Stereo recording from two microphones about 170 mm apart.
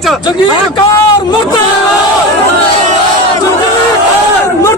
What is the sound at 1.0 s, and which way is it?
Speech, 25° left (ahead or behind).